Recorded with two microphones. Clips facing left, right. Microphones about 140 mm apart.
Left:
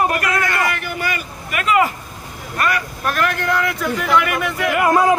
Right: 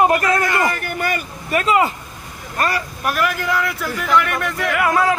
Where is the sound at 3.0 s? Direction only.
5° right (ahead or behind).